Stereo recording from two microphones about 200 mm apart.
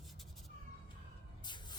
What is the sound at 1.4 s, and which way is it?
Spray, 20° left (ahead or behind).